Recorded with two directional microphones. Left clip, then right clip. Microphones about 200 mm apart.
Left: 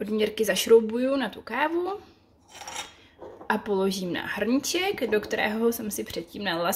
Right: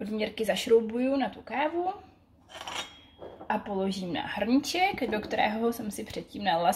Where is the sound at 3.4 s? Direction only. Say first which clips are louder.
Left 5 dB; 35° left (ahead or behind).